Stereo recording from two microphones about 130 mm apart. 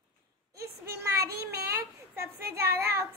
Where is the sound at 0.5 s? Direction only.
20° right (ahead or behind).